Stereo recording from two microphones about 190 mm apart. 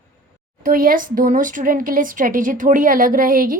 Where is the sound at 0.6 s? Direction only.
50° right (ahead or behind).